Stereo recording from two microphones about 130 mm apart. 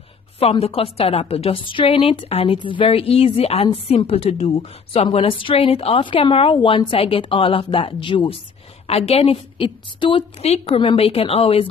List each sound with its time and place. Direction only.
0.4 s a woman's voice: 50° left (ahead or behind)
8.8 s a woman's voice: 50° left (ahead or behind)
10.4 s a woman's voice: 50° left (ahead or behind)